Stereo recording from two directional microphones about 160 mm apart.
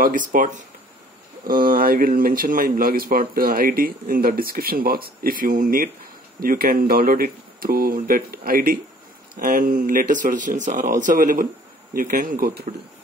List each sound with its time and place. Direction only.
0.0 s speech: 60° right (ahead or behind)